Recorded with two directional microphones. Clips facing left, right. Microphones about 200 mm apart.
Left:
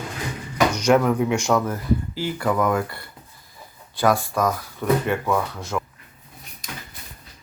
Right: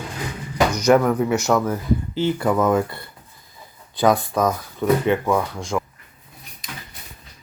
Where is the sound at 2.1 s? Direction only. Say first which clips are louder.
Right 4 dB; 20° right (ahead or behind).